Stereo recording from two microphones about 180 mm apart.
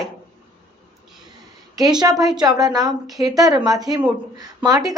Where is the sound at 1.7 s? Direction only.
20° right (ahead or behind).